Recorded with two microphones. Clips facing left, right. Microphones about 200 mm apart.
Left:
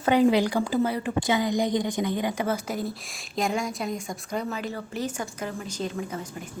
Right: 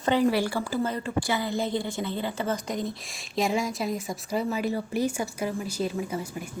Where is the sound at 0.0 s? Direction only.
15° left (ahead or behind); by 6.1 s 10° right (ahead or behind).